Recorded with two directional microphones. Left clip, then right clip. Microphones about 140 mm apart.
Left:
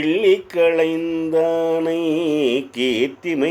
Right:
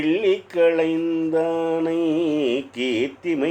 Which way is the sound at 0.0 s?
45° left (ahead or behind).